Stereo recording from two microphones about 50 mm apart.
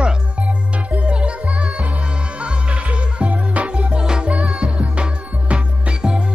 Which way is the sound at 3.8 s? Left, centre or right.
Centre.